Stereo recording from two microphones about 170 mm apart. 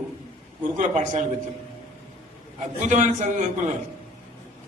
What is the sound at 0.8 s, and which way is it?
Speech, 45° right (ahead or behind).